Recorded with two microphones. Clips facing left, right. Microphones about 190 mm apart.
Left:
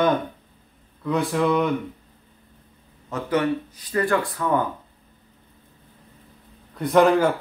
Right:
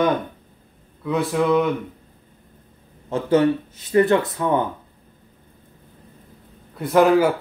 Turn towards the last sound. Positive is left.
turn(degrees=-5)  # may be behind; listen again after turning